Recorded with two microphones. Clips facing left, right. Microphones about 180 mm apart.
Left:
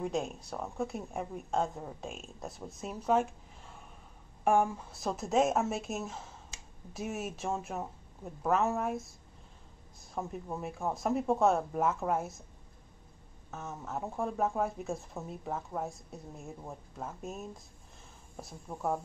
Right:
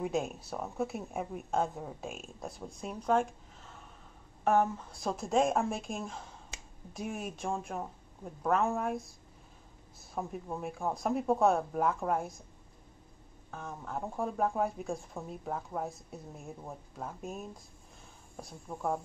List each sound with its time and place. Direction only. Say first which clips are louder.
0.0 s speech: right 1 dB; 5° right (ahead or behind)
10.1 s speech: even; centre (ahead or behind)
13.5 s speech: left 1 dB; 5° left (ahead or behind)